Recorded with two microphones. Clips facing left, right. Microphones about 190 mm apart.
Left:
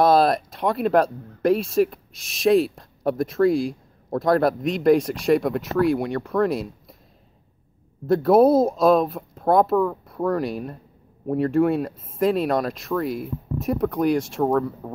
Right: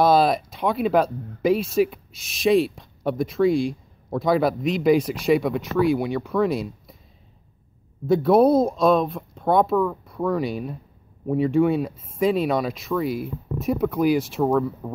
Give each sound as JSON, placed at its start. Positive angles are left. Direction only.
{"t": 0.0, "sound": "speech", "side_deg": 0}
{"t": 8.1, "sound": "speech", "side_deg": 0}